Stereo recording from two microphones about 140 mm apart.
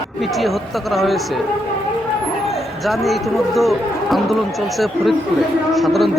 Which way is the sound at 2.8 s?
Centre (ahead or behind).